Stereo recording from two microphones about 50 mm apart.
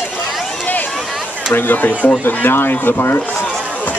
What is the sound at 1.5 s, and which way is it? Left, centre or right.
Speech, left.